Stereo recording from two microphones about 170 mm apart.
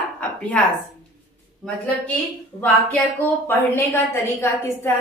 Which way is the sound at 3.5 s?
15° left (ahead or behind).